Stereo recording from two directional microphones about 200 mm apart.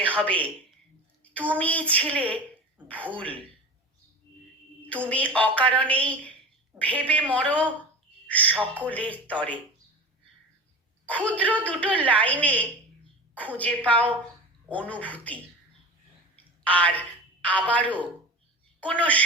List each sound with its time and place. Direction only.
0.2 s a woman's voice: 5° left (ahead or behind)
5.0 s a woman's voice: 5° left (ahead or behind)
11.0 s a woman's voice: 5° left (ahead or behind)
16.6 s a woman's voice: 5° left (ahead or behind)